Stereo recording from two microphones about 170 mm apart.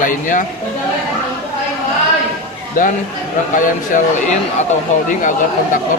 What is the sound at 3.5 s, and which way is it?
Speech, 50° left (ahead or behind).